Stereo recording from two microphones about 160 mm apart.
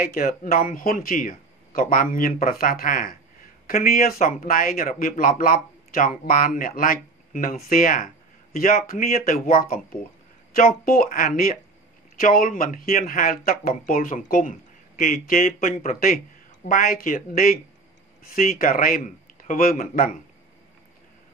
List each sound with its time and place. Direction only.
0.0 s speech: 60° left (ahead or behind)
10.9 s speech: 60° left (ahead or behind)